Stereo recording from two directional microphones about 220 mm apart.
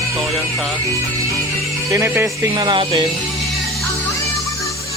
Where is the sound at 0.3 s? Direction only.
Centre (ahead or behind).